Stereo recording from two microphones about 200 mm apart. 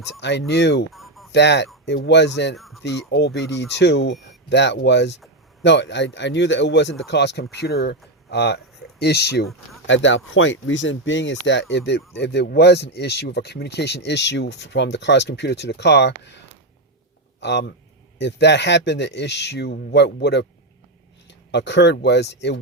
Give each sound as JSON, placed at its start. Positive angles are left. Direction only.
{"t": 0.2, "sound": "speech", "side_deg": 60}
{"t": 0.9, "sound": "a sound", "side_deg": 0}
{"t": 1.3, "sound": "speech", "side_deg": 60}
{"t": 2.6, "sound": "speech", "side_deg": 0}
{"t": 2.8, "sound": "speech", "side_deg": 60}
{"t": 9.8, "sound": "speech", "side_deg": 65}
{"t": 17.4, "sound": "a man's voice", "side_deg": 60}